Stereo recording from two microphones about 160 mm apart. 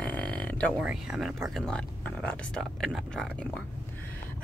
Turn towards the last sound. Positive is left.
turn(degrees=5)  # may be behind; listen again after turning